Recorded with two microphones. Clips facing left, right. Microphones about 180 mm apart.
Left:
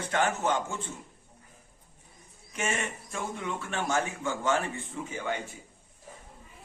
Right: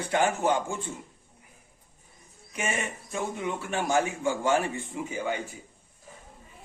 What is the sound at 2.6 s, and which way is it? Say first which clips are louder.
A man's voice: right 1 dB; 10° right (ahead or behind).